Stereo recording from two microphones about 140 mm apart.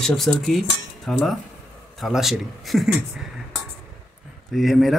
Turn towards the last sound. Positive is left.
turn(degrees=0)  # may be behind; listen again after turning